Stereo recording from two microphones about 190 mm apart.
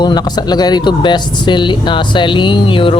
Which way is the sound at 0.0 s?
20° left (ahead or behind).